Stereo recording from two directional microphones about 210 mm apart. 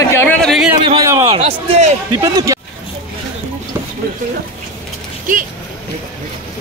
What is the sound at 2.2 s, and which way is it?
Speech, 15° right (ahead or behind).